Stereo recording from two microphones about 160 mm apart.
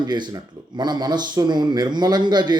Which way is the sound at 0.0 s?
25° right (ahead or behind).